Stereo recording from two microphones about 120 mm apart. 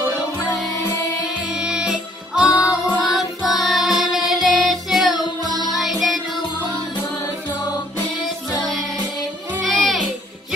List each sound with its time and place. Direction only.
1.5 s music: 5° right (ahead or behind)
5.4 s music: 30° right (ahead or behind)
5.7 s music: centre (ahead or behind)
9.6 s music: centre (ahead or behind)